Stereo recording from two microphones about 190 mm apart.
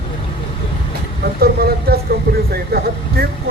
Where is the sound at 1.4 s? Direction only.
55° right (ahead or behind).